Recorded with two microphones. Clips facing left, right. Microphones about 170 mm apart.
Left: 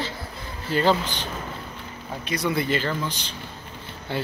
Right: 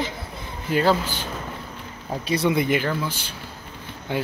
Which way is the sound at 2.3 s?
25° right (ahead or behind).